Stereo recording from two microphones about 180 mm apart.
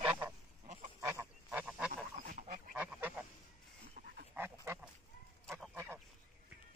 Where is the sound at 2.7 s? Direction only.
10° right (ahead or behind).